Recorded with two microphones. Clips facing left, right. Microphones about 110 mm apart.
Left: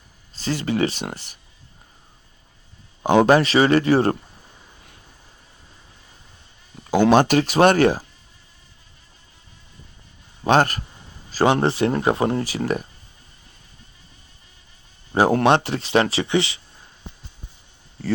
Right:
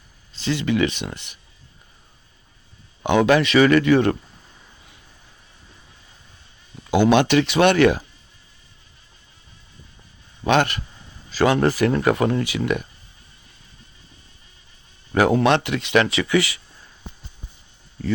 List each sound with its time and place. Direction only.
0.3 s speech: 40° left (ahead or behind)
3.0 s speech: 40° left (ahead or behind)
7.0 s speech: 40° left (ahead or behind)
10.4 s speech: 40° left (ahead or behind)
11.5 s speech: 30° left (ahead or behind)
15.1 s speech: 30° left (ahead or behind)